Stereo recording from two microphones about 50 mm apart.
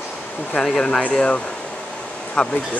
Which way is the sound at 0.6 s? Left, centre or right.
Centre.